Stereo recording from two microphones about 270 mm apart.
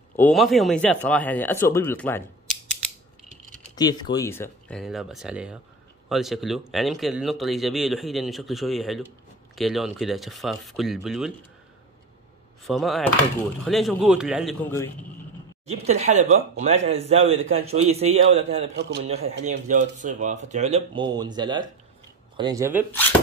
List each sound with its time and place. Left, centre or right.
0.1 s a man's voice: centre
3.7 s speech: centre
12.6 s speech: centre
15.6 s speech: right
18.8 s a man's voice: right
19.0 s speech: right